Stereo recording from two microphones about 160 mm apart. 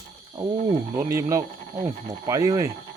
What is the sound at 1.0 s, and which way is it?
Speech, 20° right (ahead or behind).